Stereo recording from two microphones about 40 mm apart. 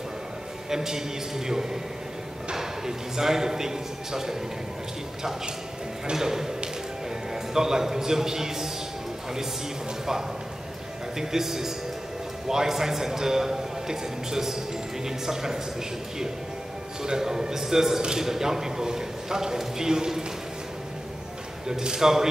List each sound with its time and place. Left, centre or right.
0.7 s a man's voice: centre
6.1 s speech: centre
7.5 s speech: centre
11.1 s speech: centre
17.0 s speech: centre
21.6 s speech: centre